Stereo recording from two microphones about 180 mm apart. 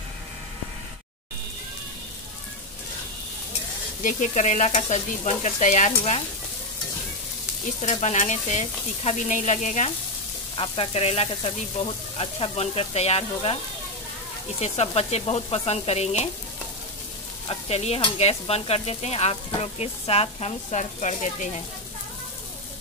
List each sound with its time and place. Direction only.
4.0 s sizzle: 40° left (ahead or behind)
7.8 s sizzle: 40° left (ahead or behind)
10.5 s sizzle: 30° left (ahead or behind)
14.6 s sizzle: 35° left (ahead or behind)
17.5 s sizzle: 35° left (ahead or behind)